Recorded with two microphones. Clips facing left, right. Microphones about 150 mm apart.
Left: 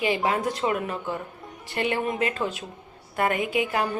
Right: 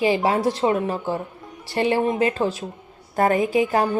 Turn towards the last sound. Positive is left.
turn(degrees=-35)  # may be behind; listen again after turning